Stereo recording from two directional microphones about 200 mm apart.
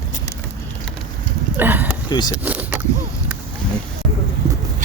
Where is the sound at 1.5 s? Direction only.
10° right (ahead or behind).